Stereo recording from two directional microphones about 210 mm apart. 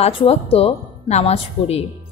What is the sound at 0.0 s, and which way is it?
A woman's voice, 30° left (ahead or behind).